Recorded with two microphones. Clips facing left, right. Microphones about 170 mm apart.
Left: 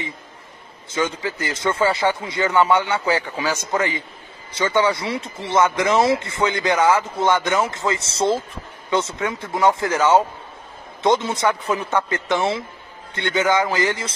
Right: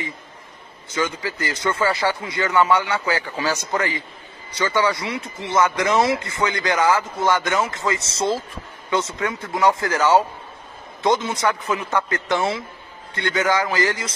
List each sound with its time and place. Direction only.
0.9 s speech: 25° left (ahead or behind)